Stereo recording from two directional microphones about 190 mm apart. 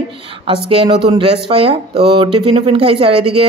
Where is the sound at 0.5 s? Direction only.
30° right (ahead or behind).